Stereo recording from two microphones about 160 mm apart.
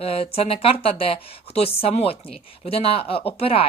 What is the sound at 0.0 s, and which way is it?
Speech, 40° left (ahead or behind).